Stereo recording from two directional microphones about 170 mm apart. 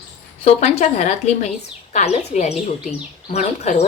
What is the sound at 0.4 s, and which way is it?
A woman's voice, 40° left (ahead or behind).